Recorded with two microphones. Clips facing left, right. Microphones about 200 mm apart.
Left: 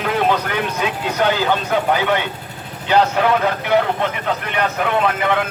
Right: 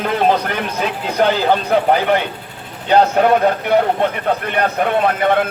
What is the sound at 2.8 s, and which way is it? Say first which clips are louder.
Speech: right 3 dB; 45° right (ahead or behind).